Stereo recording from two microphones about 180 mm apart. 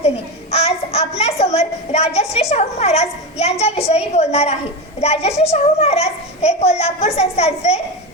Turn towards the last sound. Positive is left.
turn(degrees=35)  # may be behind; listen again after turning